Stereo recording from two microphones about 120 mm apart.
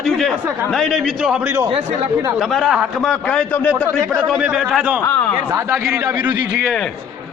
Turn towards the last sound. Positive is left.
turn(degrees=-15)  # may be behind; listen again after turning